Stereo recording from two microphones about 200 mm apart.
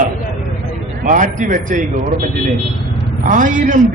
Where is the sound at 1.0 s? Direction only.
40° right (ahead or behind).